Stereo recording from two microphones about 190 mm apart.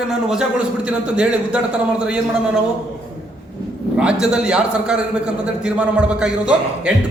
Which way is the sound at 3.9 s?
5° right (ahead or behind).